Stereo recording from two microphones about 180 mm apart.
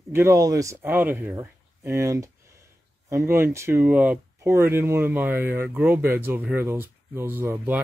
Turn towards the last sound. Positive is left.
turn(degrees=-10)  # may be behind; listen again after turning